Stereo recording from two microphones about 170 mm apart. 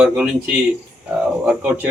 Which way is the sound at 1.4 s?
5° right (ahead or behind).